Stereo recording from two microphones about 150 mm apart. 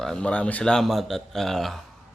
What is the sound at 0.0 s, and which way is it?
Speech, 5° left (ahead or behind).